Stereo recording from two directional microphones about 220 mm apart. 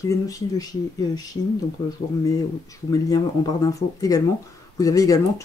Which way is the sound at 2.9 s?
15° left (ahead or behind).